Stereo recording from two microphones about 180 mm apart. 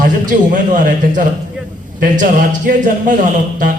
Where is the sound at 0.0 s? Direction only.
45° right (ahead or behind).